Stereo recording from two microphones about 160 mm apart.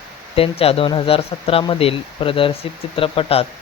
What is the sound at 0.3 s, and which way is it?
Speech, 35° left (ahead or behind).